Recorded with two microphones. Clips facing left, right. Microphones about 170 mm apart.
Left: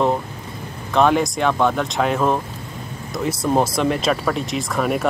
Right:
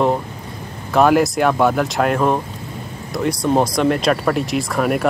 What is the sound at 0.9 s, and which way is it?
Speech, 5° right (ahead or behind).